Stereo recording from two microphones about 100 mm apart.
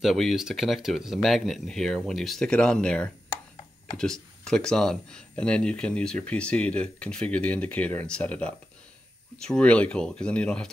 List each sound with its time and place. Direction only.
0.0 s speech: centre (ahead or behind)